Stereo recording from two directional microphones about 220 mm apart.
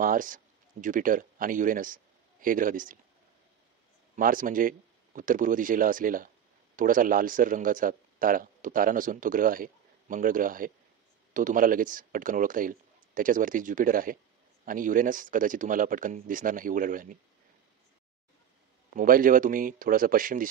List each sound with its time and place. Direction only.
0.0 s speech: 40° right (ahead or behind)
4.2 s speech: 40° right (ahead or behind)
18.9 s speech: 40° right (ahead or behind)